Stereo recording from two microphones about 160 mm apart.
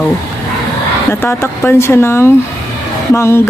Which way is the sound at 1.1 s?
15° left (ahead or behind).